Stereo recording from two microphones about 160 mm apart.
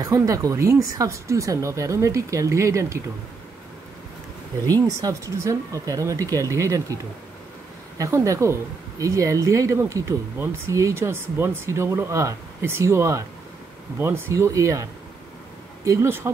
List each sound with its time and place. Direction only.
0.0 s speech: 20° right (ahead or behind)
4.6 s speech: 20° right (ahead or behind)
8.0 s speech: 20° right (ahead or behind)